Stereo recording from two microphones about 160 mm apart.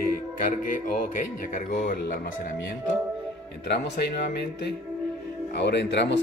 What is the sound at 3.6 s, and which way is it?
Speech, 90° left.